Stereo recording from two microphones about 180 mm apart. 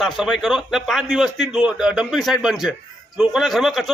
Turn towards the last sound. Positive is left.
turn(degrees=0)  # may be behind; listen again after turning